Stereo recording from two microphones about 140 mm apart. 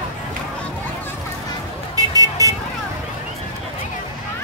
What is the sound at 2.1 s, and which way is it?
Vehicle, 25° right (ahead or behind).